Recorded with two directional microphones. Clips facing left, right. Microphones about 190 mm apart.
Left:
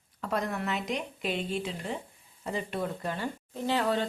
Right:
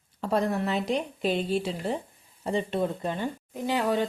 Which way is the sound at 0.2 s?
30° right (ahead or behind).